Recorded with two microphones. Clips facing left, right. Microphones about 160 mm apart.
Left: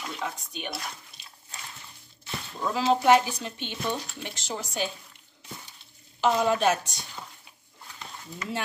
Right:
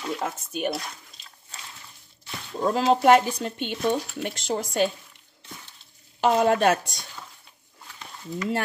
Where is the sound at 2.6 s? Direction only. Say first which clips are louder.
Right 4 dB; 40° right (ahead or behind).